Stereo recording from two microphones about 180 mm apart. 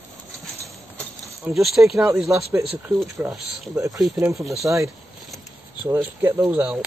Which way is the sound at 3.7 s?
15° right (ahead or behind).